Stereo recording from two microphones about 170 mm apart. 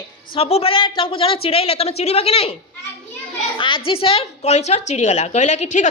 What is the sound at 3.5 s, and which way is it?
A woman's voice, 30° left (ahead or behind).